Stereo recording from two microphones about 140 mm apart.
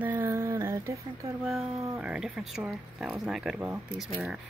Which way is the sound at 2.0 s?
5° right (ahead or behind).